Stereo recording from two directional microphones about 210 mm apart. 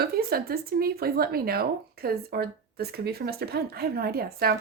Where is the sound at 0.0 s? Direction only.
45° right (ahead or behind).